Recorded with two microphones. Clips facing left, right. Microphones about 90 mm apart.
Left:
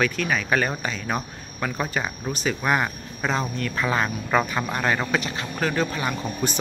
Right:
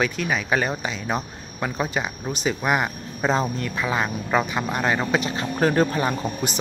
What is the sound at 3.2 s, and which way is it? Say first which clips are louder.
Speech: right 3 dB; 30° right (ahead or behind).